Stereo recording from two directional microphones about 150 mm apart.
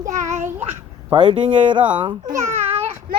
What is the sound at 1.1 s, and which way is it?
Speech, 35° right (ahead or behind).